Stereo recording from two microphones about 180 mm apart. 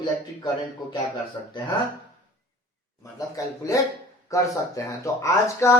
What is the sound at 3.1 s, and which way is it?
A man's voice, 20° left (ahead or behind).